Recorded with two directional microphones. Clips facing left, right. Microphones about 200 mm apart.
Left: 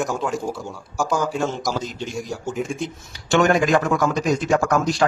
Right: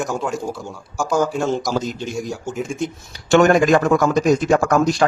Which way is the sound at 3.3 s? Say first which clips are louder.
Right 4 dB; 45° right (ahead or behind).